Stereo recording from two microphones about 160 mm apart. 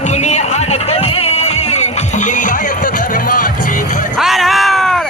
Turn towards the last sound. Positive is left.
turn(degrees=0)  # may be behind; listen again after turning